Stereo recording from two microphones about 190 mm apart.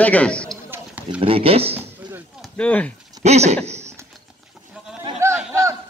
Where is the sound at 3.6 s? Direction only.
35° right (ahead or behind).